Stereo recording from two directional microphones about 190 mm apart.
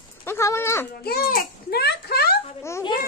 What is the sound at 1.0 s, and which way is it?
Speech, 55° left (ahead or behind).